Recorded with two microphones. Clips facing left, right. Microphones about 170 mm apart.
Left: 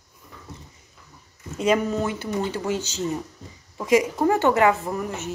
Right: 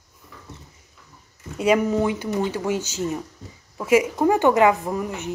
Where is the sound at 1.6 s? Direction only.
10° right (ahead or behind).